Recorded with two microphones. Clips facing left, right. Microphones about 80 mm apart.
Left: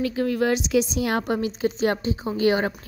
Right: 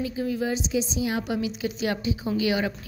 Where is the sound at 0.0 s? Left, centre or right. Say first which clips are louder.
Left 5 dB; left.